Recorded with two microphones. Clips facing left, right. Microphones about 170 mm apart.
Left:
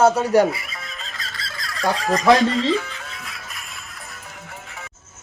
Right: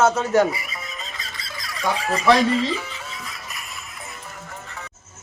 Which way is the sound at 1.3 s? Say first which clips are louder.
Left 1 dB; 15° right (ahead or behind).